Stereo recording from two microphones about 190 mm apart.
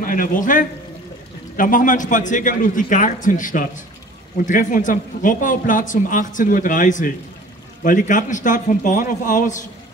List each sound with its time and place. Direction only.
0.0 s a man's voice: 45° left (ahead or behind)